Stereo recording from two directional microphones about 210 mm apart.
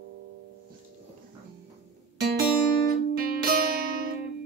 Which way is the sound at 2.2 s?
50° right (ahead or behind).